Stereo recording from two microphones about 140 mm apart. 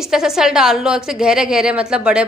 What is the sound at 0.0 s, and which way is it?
A woman's voice, 5° right (ahead or behind).